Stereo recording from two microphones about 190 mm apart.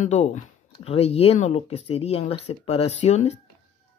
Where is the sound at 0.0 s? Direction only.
40° left (ahead or behind).